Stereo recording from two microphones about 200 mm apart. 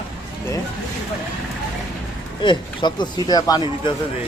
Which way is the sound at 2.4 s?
20° left (ahead or behind).